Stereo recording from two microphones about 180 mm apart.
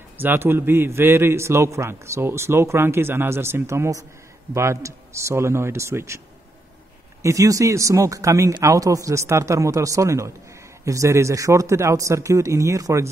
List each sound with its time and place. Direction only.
0.2 s a man's voice: 10° right (ahead or behind)